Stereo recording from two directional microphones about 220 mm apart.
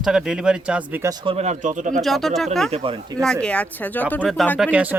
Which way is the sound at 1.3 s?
30° right (ahead or behind).